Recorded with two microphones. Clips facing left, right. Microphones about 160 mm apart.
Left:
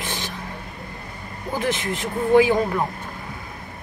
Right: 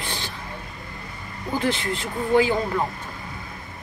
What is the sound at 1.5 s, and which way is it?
Speech, 15° left (ahead or behind).